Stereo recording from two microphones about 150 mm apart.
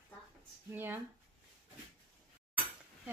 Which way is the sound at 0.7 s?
15° right (ahead or behind).